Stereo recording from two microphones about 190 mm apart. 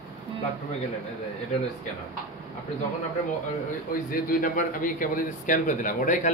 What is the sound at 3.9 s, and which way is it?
A man's voice, 50° left (ahead or behind).